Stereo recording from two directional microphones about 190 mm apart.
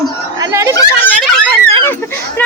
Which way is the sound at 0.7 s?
10° left (ahead or behind).